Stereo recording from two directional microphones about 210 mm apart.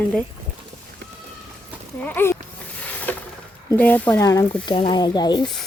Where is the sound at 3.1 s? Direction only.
5° left (ahead or behind).